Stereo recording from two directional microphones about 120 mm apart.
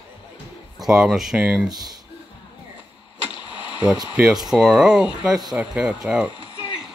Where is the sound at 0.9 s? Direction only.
5° right (ahead or behind).